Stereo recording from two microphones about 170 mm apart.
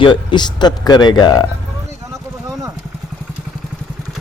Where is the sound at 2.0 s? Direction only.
20° right (ahead or behind).